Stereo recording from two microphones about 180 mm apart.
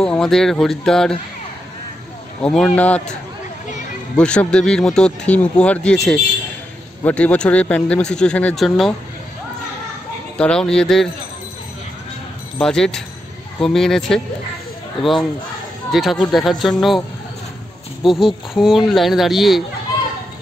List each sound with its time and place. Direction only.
0.0 s speech: 5° left (ahead or behind)
2.4 s speech: 5° left (ahead or behind)
4.2 s speech: 5° left (ahead or behind)
10.3 s speech: 5° left (ahead or behind)
12.5 s speech: 5° left (ahead or behind)
18.0 s speech: centre (ahead or behind)